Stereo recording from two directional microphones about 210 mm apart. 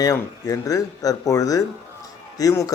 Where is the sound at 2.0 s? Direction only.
15° left (ahead or behind).